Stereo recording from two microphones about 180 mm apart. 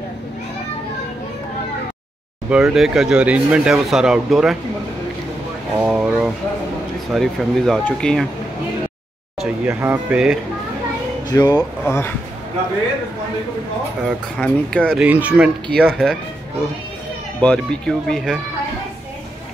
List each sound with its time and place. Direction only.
2.5 s speech: 5° right (ahead or behind)
5.8 s speech: 10° right (ahead or behind)
9.7 s speech: 10° right (ahead or behind)
11.2 s speech: 20° left (ahead or behind)
14.0 s speech: 5° left (ahead or behind)
15.0 s speech: 10° right (ahead or behind)
15.7 s speech: 5° left (ahead or behind)
17.4 s speech: 5° left (ahead or behind)